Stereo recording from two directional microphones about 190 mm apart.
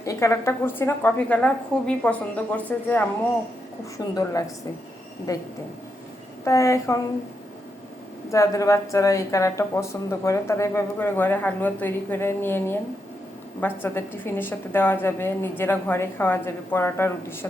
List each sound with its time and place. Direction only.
0.0 s a woman's voice: 15° left (ahead or behind)
8.3 s a woman's voice: 15° left (ahead or behind)